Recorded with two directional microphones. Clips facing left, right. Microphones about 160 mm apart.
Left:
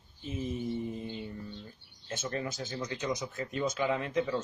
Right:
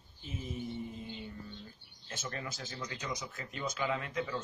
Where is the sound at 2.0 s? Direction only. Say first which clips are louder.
Left 6 dB; 25° left (ahead or behind).